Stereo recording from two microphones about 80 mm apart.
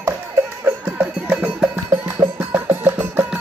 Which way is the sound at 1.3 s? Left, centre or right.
Centre.